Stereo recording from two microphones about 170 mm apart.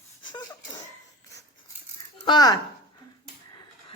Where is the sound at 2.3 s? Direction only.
25° left (ahead or behind).